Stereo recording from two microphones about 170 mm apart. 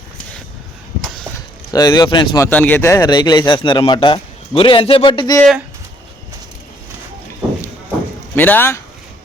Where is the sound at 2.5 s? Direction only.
10° left (ahead or behind); by 5.4 s 25° left (ahead or behind).